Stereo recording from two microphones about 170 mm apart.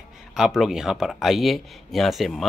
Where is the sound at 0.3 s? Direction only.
Centre (ahead or behind).